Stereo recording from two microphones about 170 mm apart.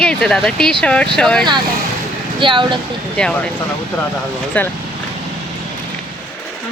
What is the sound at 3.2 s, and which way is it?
Speech, 5° left (ahead or behind).